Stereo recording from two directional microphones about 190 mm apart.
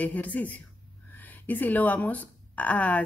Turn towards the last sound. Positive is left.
turn(degrees=5)  # may be behind; listen again after turning